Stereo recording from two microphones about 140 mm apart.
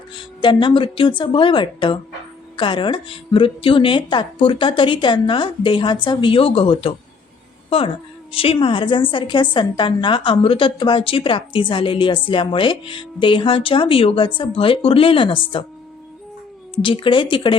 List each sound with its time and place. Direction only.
0.1 s a woman's voice: 35° left (ahead or behind)
8.3 s a woman's voice: 40° left (ahead or behind)
16.8 s a woman's voice: 35° left (ahead or behind)